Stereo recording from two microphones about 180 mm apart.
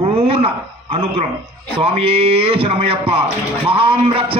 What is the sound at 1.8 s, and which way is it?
Speech, 30° right (ahead or behind).